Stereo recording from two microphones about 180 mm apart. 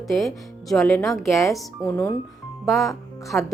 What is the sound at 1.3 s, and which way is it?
Speech, 15° left (ahead or behind).